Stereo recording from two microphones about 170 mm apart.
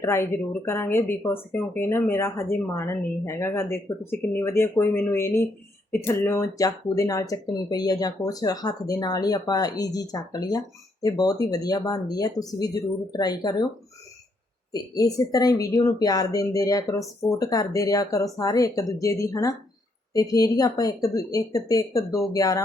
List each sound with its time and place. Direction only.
0.0 s speech: 15° left (ahead or behind)
14.7 s speech: 20° left (ahead or behind)